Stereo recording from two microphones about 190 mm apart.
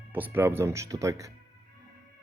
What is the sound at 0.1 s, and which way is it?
Speech, 10° right (ahead or behind).